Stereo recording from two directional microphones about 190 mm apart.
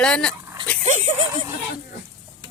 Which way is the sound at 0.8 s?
40° right (ahead or behind).